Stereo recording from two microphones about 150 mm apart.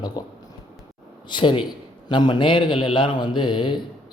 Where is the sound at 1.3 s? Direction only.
35° left (ahead or behind).